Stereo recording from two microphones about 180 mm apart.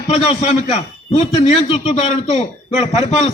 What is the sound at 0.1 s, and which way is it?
A man's voice, 35° left (ahead or behind).